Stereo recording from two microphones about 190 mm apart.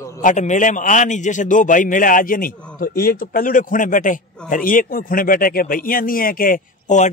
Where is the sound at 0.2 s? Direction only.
40° left (ahead or behind).